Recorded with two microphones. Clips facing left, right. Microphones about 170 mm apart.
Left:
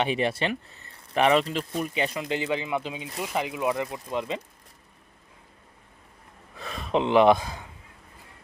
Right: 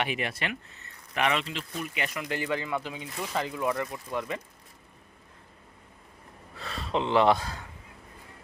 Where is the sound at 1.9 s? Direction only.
25° left (ahead or behind).